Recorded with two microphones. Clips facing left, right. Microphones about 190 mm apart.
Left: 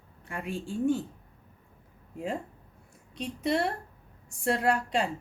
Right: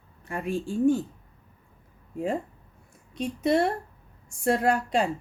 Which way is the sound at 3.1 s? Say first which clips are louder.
Right 5 dB; 45° right (ahead or behind).